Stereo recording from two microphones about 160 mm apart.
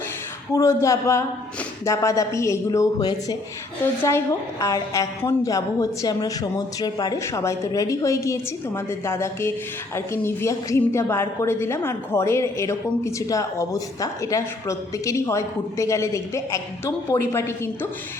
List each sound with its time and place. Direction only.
0.5 s a woman's voice: 20° left (ahead or behind)
4.6 s a woman's voice: 20° left (ahead or behind)